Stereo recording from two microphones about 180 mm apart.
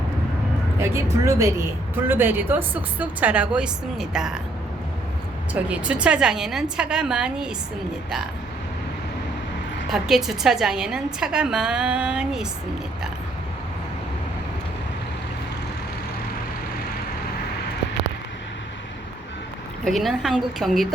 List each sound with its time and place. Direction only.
0.8 s speech: 15° right (ahead or behind)
5.6 s a woman's voice: 5° right (ahead or behind)
9.9 s a woman's voice: centre (ahead or behind)
19.8 s a woman's voice: centre (ahead or behind)